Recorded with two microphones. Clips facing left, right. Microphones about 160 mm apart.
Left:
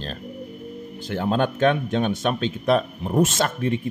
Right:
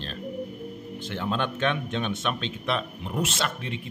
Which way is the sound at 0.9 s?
40° left (ahead or behind).